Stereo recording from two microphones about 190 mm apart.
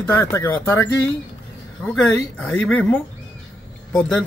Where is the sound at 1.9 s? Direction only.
5° left (ahead or behind).